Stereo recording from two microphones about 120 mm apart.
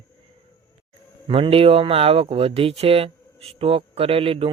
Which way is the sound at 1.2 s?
45° right (ahead or behind).